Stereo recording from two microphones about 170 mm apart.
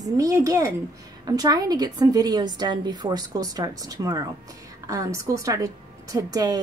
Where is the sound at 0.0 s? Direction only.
20° right (ahead or behind).